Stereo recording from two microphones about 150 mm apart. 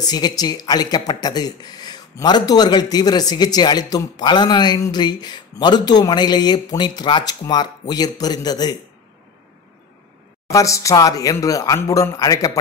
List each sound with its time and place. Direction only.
0.0 s speech: 25° left (ahead or behind)
10.5 s speech: 20° left (ahead or behind)